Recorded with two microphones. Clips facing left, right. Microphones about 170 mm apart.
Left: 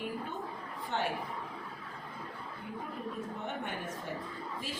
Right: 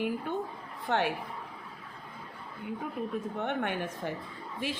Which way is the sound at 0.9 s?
70° right (ahead or behind).